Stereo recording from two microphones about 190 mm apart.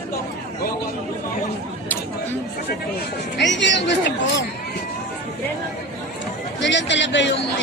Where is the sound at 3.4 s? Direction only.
70° left (ahead or behind).